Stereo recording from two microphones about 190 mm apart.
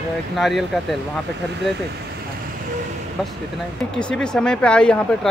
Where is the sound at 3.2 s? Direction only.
Centre (ahead or behind).